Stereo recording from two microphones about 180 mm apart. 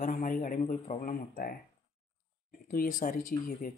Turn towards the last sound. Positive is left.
turn(degrees=50)  # may be behind; listen again after turning